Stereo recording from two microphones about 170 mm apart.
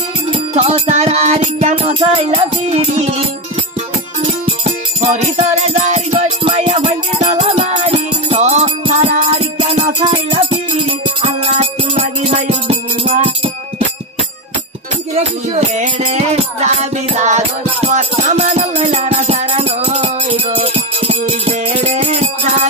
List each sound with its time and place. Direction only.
0.3 s music: 35° right (ahead or behind)
4.2 s music: 35° right (ahead or behind)
15.1 s music: 40° right (ahead or behind)